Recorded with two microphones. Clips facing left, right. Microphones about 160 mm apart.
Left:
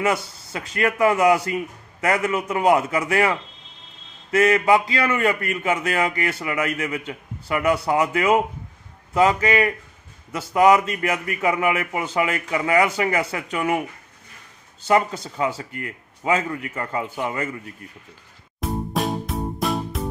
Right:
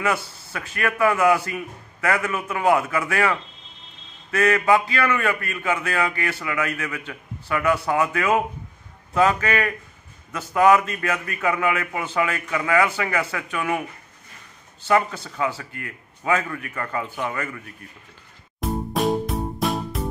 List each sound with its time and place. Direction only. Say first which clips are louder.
0.0 s a man's voice: left 2 dB; 20° left (ahead or behind)
14.9 s a man's voice: left 1 dB; 20° left (ahead or behind)
18.6 s music: right 1 dB; centre (ahead or behind)